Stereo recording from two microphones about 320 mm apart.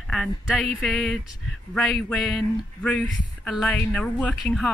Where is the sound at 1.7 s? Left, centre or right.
Centre.